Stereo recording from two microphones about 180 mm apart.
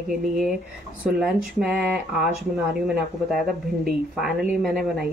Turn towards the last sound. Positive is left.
turn(degrees=0)  # may be behind; listen again after turning